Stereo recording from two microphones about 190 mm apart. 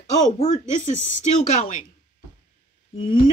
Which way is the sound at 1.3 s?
40° left (ahead or behind).